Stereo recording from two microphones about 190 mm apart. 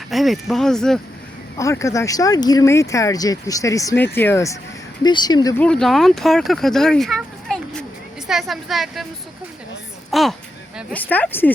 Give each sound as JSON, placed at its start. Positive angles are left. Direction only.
{"t": 0.1, "sound": "speech", "side_deg": 0}
{"t": 1.5, "sound": "speech", "side_deg": 15}
{"t": 5.5, "sound": "speech", "side_deg": 5}
{"t": 10.1, "sound": "speech", "side_deg": 0}